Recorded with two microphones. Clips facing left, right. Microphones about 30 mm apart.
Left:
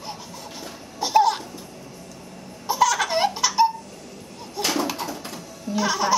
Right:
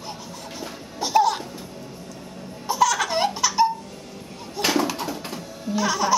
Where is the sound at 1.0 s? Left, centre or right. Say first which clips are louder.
Left 1 dB; centre.